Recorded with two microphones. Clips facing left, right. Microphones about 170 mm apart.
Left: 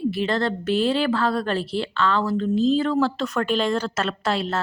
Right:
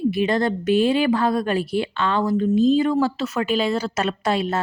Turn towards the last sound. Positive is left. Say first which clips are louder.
# right 2 dB
turn(degrees=-15)  # may be behind; listen again after turning